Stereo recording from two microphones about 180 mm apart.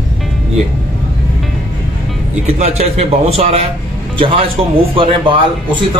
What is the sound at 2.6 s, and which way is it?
A man's voice, 35° right (ahead or behind).